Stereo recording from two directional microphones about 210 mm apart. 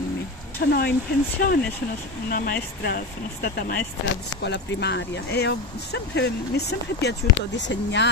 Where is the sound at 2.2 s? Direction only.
45° left (ahead or behind).